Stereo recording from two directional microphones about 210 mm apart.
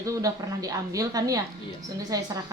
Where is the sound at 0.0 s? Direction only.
15° right (ahead or behind).